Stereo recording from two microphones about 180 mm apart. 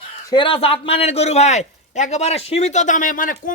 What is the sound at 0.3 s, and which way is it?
A man's voice, 30° left (ahead or behind).